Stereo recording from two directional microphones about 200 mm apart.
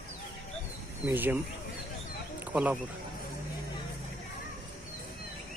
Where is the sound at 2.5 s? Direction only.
5° right (ahead or behind).